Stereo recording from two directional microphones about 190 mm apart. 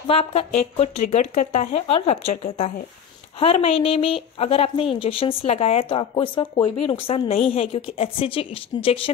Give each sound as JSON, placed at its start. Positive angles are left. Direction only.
{"t": 0.0, "sound": "a woman's voice", "side_deg": 30}